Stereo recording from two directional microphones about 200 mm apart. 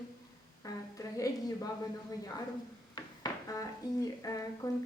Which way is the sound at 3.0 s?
15° left (ahead or behind).